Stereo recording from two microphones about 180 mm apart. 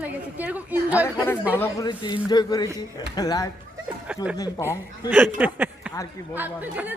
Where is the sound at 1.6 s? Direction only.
20° left (ahead or behind).